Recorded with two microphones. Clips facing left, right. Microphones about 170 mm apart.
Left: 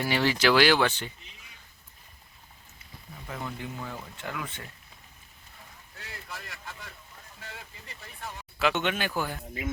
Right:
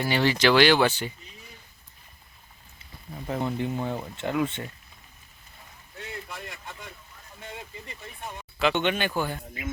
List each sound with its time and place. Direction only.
0.0 s speech: 5° left (ahead or behind)
3.2 s speech: 30° right (ahead or behind)
6.0 s speech: 20° right (ahead or behind)
8.5 s speech: 5° left (ahead or behind)